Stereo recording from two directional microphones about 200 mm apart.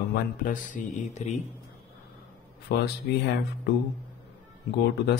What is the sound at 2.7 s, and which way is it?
Speech, 55° left (ahead or behind).